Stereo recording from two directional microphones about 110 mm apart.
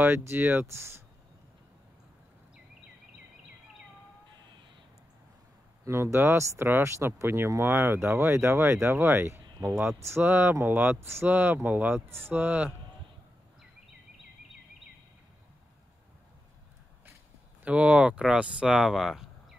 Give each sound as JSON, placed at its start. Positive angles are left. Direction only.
{"t": 0.0, "sound": "speech", "side_deg": -20}
{"t": 5.9, "sound": "speech", "side_deg": -25}
{"t": 17.6, "sound": "speech", "side_deg": -10}